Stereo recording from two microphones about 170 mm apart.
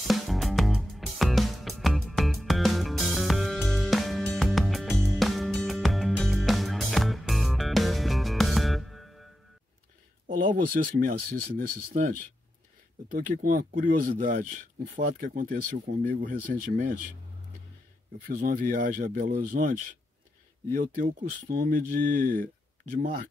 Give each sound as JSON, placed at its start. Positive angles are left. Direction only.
{"t": 0.0, "sound": "music", "side_deg": 0}
{"t": 10.5, "sound": "speech", "side_deg": -55}
{"t": 13.1, "sound": "speech", "side_deg": -55}
{"t": 18.2, "sound": "speech", "side_deg": -60}
{"t": 20.7, "sound": "speech", "side_deg": -55}